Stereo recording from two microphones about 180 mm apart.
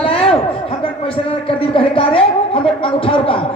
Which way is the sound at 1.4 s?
30° left (ahead or behind).